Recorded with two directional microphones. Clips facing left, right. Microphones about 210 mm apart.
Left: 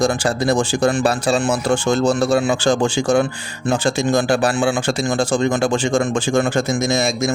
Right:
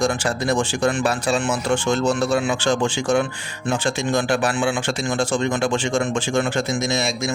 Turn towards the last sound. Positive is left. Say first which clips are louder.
# left 4 dB
turn(degrees=45)  # may be behind; listen again after turning